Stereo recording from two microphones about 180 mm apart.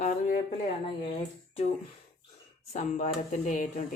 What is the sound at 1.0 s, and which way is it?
Speech, 30° left (ahead or behind).